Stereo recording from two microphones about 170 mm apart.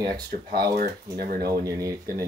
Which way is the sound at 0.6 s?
65° right (ahead or behind).